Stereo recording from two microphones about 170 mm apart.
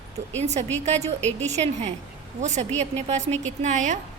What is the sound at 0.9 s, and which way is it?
A woman's voice, 40° right (ahead or behind).